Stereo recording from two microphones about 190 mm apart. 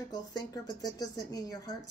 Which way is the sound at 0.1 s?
20° left (ahead or behind).